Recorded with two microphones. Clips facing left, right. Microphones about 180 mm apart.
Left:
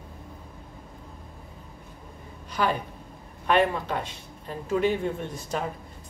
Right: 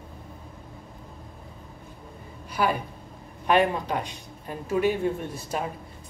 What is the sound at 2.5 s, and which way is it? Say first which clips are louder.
A woman's voice: right 1 dB; 10° right (ahead or behind).